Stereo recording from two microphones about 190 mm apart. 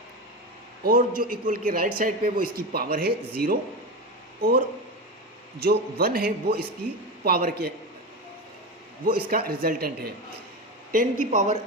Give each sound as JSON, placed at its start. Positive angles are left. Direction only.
{"t": 0.9, "sound": "speech", "side_deg": -50}
{"t": 9.2, "sound": "speech", "side_deg": -50}